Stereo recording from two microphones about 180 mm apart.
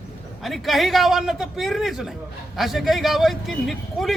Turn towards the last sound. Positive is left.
turn(degrees=0)  # may be behind; listen again after turning